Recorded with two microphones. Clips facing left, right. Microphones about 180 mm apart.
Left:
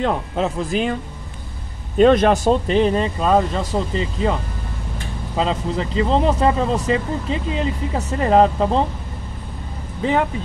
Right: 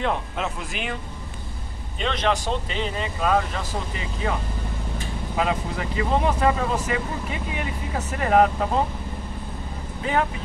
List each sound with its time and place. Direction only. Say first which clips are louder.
0.0 s speech: left 5 dB; 35° left (ahead or behind)
2.0 s speech: left 12 dB; 45° left (ahead or behind); by 4.4 s 30° left (ahead or behind)
5.4 s speech: left 4 dB; 25° left (ahead or behind)